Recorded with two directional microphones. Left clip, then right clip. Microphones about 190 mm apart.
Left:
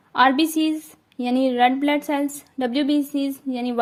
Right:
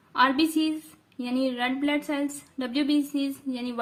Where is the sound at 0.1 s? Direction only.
35° left (ahead or behind).